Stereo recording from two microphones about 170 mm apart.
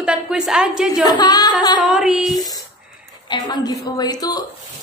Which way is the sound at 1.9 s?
Centre (ahead or behind).